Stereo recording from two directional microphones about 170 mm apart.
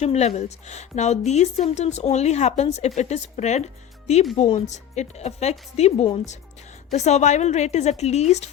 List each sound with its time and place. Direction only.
0.0 s a woman's voice: 40° left (ahead or behind)